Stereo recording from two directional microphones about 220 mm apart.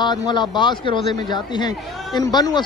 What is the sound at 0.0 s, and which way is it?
Speech, 20° left (ahead or behind).